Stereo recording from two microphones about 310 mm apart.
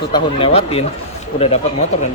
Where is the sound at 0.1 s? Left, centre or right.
Centre.